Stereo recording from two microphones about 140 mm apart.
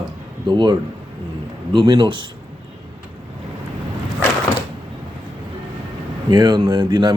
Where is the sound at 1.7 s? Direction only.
35° right (ahead or behind).